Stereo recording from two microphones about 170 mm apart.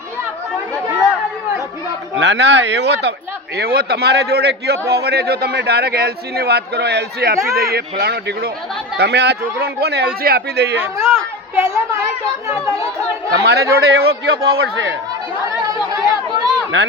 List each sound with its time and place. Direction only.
2.1 s a man's voice: 90° right
10.8 s speech: 15° right (ahead or behind)
13.4 s speech: 70° right (ahead or behind)
15.9 s chatter: 25° right (ahead or behind)